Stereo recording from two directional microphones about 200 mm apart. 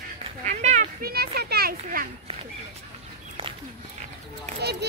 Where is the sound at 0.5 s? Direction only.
35° right (ahead or behind).